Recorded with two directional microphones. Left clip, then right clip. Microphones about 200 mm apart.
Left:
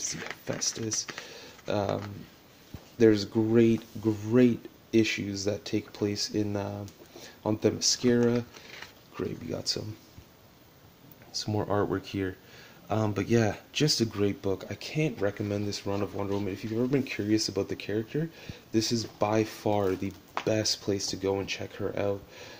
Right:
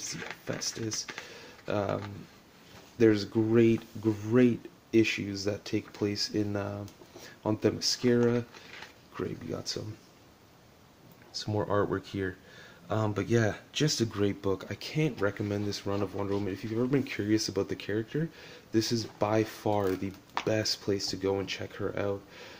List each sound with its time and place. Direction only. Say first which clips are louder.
0.0 s speech: left 3 dB; 20° left (ahead or behind)
1.7 s speech: left 2 dB; 5° left (ahead or behind)
3.0 s speech: left 2 dB; 5° left (ahead or behind)
11.3 s speech: even; 10° left (ahead or behind)